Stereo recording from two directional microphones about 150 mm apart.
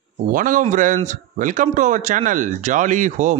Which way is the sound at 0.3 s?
65° right (ahead or behind).